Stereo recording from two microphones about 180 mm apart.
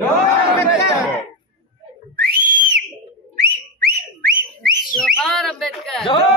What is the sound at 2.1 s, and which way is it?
Whistle, 55° right (ahead or behind).